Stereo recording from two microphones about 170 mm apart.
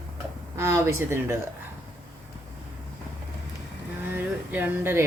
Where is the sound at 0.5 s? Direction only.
15° right (ahead or behind).